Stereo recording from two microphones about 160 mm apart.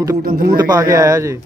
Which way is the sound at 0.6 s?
25° right (ahead or behind).